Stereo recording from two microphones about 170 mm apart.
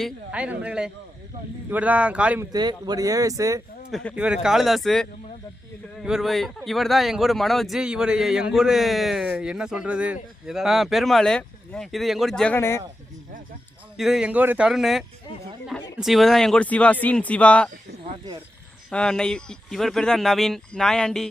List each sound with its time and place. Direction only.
0.0 s a man's voice: 5° right (ahead or behind)
2.5 s speech: 25° right (ahead or behind)
3.9 s a man's voice: centre (ahead or behind)
12.5 s speech: 15° left (ahead or behind)
13.9 s a man's voice: centre (ahead or behind)
18.9 s a man's voice: 5° left (ahead or behind)